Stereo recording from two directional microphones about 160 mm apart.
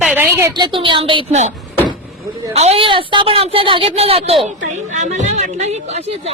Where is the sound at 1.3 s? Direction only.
45° right (ahead or behind).